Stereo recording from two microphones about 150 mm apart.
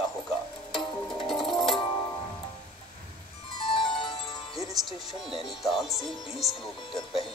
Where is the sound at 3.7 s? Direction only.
35° left (ahead or behind).